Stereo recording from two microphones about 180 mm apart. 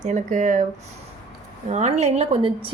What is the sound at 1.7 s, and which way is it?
Speech, 40° right (ahead or behind).